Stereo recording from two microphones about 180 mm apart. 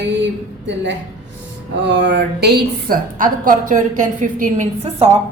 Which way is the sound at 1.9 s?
75° right (ahead or behind).